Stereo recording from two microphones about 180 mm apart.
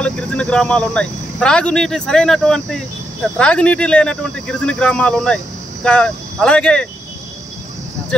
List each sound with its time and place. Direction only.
0.0 s speech: 5° left (ahead or behind)